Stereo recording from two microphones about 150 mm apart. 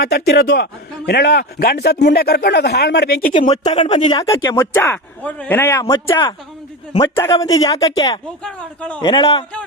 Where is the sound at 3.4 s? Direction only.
45° left (ahead or behind).